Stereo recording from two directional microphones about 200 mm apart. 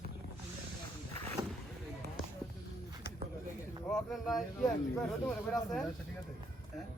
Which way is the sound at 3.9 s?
Centre (ahead or behind).